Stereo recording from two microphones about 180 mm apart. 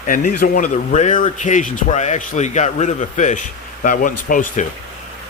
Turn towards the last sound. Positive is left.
turn(degrees=45)  # may be behind; listen again after turning